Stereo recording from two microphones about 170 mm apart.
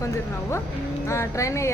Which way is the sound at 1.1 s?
15° left (ahead or behind).